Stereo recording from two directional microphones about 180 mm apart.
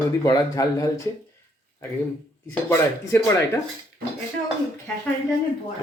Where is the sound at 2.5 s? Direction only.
15° left (ahead or behind).